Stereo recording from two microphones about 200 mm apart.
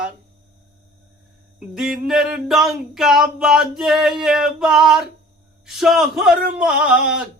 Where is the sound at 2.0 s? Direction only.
5° right (ahead or behind).